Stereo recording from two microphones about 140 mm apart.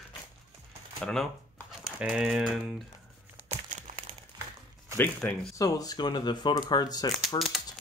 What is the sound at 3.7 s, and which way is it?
Crumpling, 55° right (ahead or behind).